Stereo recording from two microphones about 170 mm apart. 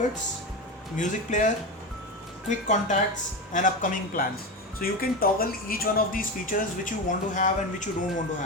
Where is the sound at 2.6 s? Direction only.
45° left (ahead or behind).